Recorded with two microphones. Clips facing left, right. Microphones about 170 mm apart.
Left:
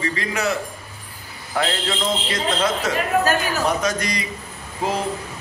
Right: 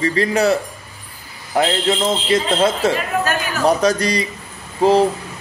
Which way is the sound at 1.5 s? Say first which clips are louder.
Right 6 dB; 20° right (ahead or behind).